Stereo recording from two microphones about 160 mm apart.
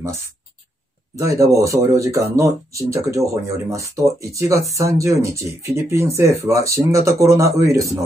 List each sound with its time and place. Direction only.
1.1 s speech: 20° right (ahead or behind)